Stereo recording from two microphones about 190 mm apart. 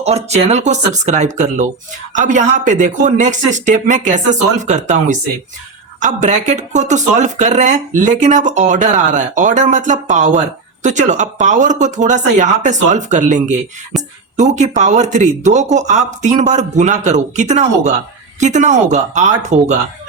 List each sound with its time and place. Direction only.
0.0 s speech: 35° right (ahead or behind)
13.9 s speech: centre (ahead or behind)
14.3 s speech: 40° right (ahead or behind)